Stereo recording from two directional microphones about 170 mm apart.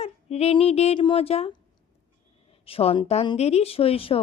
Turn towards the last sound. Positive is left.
turn(degrees=35)  # may be behind; listen again after turning